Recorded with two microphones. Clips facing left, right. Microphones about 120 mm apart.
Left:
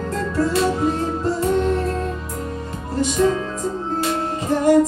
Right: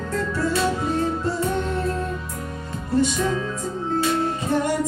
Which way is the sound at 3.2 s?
40° left (ahead or behind).